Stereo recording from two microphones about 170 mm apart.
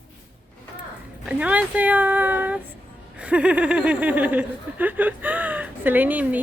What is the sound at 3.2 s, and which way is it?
Speech, 5° right (ahead or behind).